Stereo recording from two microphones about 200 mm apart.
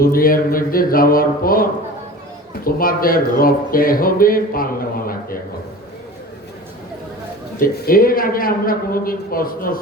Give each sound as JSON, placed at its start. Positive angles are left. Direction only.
{"t": 0.0, "sound": "speech", "side_deg": 45}
{"t": 2.6, "sound": "speech", "side_deg": 45}
{"t": 7.6, "sound": "speech", "side_deg": 45}